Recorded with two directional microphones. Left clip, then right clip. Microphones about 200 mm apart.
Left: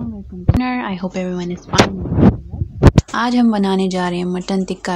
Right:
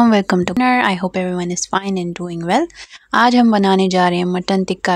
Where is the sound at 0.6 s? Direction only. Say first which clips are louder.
Right 8 dB; 55° right (ahead or behind).